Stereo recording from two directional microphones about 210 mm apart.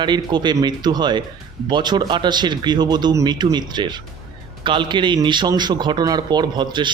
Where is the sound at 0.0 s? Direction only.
20° right (ahead or behind).